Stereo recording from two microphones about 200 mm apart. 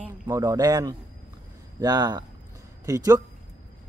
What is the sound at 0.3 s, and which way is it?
Speech, 15° right (ahead or behind).